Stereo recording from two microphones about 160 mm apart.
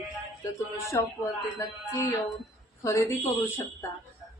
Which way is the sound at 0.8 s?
20° left (ahead or behind).